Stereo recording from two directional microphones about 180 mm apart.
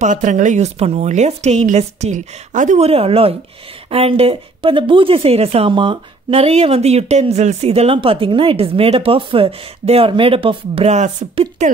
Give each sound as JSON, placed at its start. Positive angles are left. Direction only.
{"t": 0.0, "sound": "a woman's voice", "side_deg": -45}